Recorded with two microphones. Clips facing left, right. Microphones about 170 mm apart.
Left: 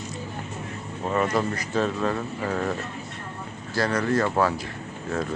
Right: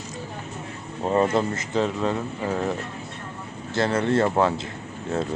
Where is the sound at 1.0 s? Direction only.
30° right (ahead or behind).